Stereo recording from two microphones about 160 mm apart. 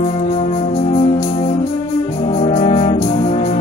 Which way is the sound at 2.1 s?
40° left (ahead or behind).